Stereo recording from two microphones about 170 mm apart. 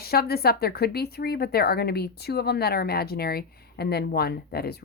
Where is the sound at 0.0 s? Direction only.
65° left (ahead or behind).